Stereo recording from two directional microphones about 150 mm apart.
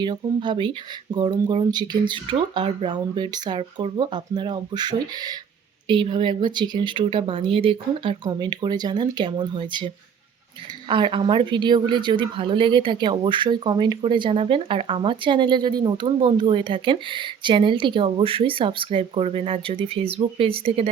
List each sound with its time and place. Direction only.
0.0 s speech: 30° right (ahead or behind)